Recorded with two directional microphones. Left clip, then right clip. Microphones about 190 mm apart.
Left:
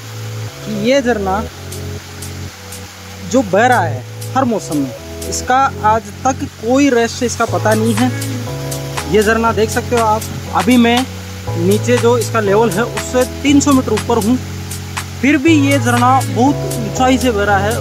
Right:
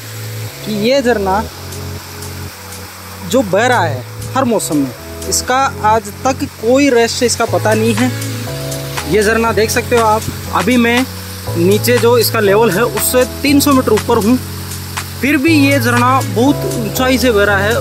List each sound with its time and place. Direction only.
0.8 s speech: centre (ahead or behind)
3.3 s speech: 5° right (ahead or behind)